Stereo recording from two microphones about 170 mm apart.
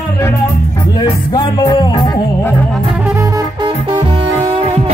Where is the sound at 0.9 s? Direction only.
25° left (ahead or behind).